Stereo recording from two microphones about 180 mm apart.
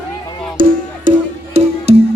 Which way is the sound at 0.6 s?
50° right (ahead or behind).